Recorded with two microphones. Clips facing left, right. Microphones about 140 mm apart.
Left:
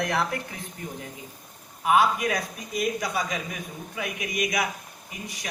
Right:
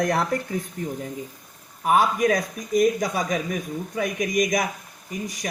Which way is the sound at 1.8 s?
45° right (ahead or behind).